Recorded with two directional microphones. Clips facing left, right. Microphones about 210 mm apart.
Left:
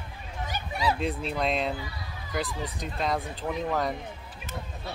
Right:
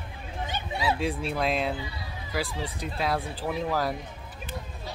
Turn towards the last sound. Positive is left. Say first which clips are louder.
# right 1 dB
turn(degrees=-5)  # may be behind; listen again after turning